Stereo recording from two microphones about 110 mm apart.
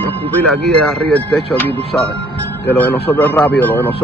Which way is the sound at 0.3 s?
10° left (ahead or behind).